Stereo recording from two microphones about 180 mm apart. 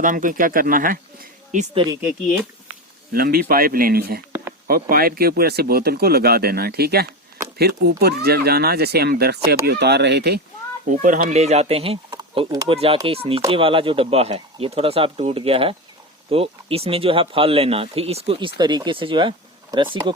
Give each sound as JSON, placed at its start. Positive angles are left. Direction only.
{"t": 0.0, "sound": "speech", "side_deg": -45}
{"t": 3.1, "sound": "speech", "side_deg": -55}
{"t": 10.8, "sound": "speech", "side_deg": -45}